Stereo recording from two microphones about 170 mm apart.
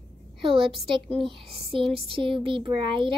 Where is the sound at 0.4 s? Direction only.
30° right (ahead or behind).